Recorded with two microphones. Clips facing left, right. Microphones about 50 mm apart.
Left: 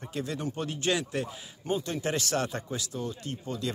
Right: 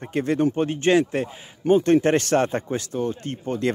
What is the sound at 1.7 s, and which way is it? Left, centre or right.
Speech, right.